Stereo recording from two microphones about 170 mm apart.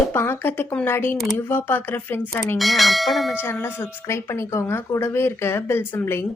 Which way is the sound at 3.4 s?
15° left (ahead or behind).